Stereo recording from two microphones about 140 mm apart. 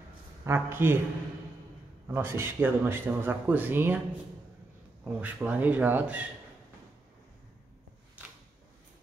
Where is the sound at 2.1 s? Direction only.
15° right (ahead or behind).